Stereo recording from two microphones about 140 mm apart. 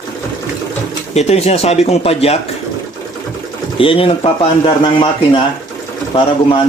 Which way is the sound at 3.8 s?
40° left (ahead or behind).